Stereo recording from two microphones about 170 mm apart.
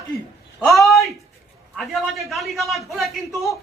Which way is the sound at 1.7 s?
Centre (ahead or behind).